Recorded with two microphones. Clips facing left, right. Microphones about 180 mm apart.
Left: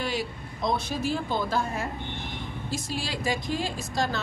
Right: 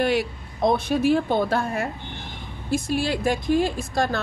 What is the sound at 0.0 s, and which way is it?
A woman's voice, 65° right (ahead or behind).